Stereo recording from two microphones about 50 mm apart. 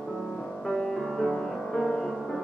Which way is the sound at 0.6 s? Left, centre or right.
Centre.